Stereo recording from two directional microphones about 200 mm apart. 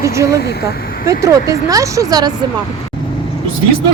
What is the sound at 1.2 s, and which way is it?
Speech, 15° right (ahead or behind).